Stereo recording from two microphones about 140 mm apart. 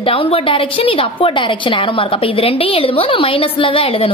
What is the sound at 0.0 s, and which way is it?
A woman's voice, 40° left (ahead or behind).